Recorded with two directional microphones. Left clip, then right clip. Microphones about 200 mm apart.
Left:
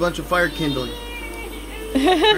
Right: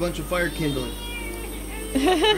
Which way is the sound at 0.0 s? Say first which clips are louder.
Left 6 dB; 45° left (ahead or behind).